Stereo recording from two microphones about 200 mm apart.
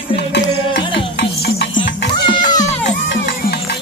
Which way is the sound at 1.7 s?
25° left (ahead or behind).